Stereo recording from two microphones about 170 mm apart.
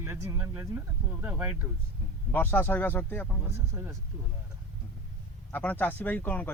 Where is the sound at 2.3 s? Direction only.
10° left (ahead or behind).